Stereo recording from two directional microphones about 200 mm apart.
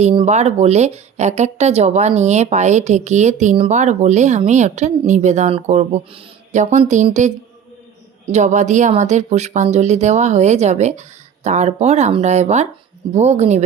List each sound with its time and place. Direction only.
0.0 s speech: 30° right (ahead or behind)